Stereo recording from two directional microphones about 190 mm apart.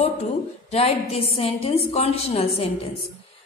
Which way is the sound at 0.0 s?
35° left (ahead or behind).